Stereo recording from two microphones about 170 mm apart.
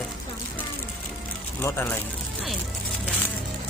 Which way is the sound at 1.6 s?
15° left (ahead or behind).